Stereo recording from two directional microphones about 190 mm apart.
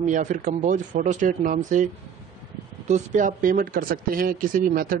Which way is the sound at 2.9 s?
40° right (ahead or behind).